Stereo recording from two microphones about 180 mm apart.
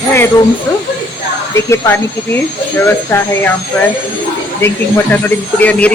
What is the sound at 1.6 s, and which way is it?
Speech, 15° left (ahead or behind).